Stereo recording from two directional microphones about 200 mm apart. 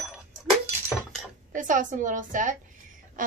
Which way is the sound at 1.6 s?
40° right (ahead or behind).